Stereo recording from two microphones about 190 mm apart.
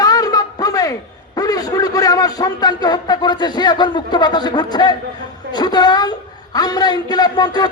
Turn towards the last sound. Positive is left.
turn(degrees=20)  # may be behind; listen again after turning